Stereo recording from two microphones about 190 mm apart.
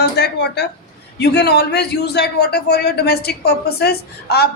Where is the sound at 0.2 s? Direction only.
60° left (ahead or behind).